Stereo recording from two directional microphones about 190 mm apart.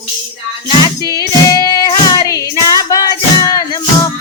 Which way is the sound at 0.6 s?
20° left (ahead or behind).